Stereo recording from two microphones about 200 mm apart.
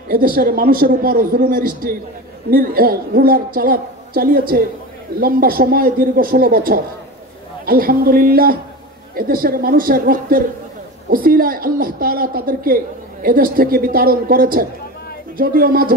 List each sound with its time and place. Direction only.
0.1 s a woman's voice: 45° right (ahead or behind)